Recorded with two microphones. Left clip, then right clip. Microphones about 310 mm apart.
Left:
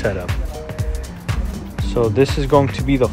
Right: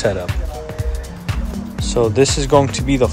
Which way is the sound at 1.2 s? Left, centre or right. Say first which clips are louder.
Right 2 dB; centre.